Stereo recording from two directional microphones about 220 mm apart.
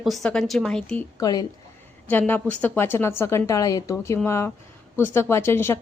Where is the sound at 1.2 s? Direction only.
15° left (ahead or behind).